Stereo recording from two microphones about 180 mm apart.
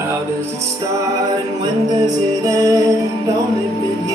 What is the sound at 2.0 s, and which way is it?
Music, 20° right (ahead or behind).